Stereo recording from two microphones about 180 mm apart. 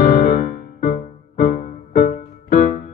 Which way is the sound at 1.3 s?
45° left (ahead or behind).